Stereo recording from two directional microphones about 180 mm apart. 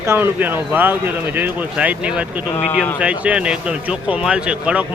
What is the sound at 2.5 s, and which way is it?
Speech, 35° left (ahead or behind).